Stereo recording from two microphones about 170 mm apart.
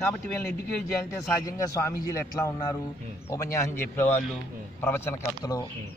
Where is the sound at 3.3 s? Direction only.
15° left (ahead or behind).